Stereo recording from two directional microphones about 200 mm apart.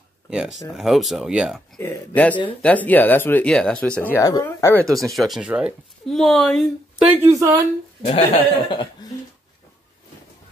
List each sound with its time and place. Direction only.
0.3 s speech: 5° right (ahead or behind)
1.8 s speech: 10° left (ahead or behind)
4.1 s speech: 15° left (ahead or behind)
4.8 s speech: centre (ahead or behind)
7.2 s speech: 15° right (ahead or behind)
8.1 s speech: 25° left (ahead or behind)